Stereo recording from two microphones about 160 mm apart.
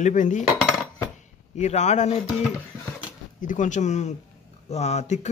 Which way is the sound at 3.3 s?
55° left (ahead or behind).